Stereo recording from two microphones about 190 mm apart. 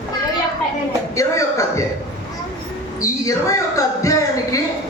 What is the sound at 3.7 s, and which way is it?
Speech, 15° left (ahead or behind).